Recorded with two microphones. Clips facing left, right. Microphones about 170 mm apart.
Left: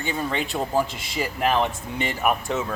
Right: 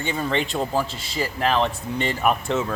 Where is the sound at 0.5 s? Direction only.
15° left (ahead or behind).